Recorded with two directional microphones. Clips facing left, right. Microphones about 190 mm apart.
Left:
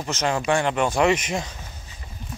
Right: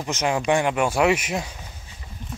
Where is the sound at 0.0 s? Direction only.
15° right (ahead or behind).